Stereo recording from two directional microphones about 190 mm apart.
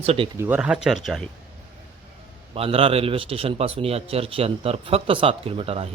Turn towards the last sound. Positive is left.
turn(degrees=-30)  # may be behind; listen again after turning